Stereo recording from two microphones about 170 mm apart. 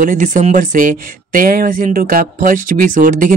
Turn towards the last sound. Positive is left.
turn(degrees=-50)  # may be behind; listen again after turning